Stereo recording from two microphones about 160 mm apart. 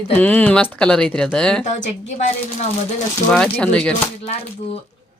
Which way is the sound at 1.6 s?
45° left (ahead or behind).